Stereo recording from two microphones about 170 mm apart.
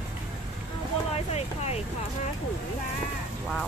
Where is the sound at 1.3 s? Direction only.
40° left (ahead or behind).